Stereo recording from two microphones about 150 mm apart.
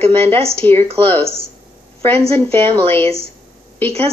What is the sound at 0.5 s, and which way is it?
Speech, 15° left (ahead or behind).